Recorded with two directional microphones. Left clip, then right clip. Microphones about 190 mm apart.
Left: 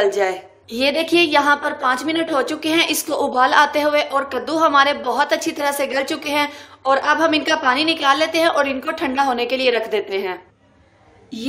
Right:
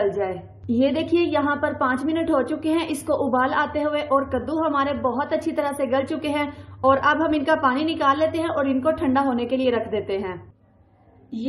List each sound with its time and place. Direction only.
0.2 s a woman's voice: 30° left (ahead or behind)